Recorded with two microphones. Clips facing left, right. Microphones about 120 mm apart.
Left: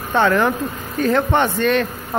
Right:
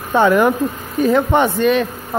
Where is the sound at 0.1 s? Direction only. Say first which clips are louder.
Right 3 dB; 10° right (ahead or behind).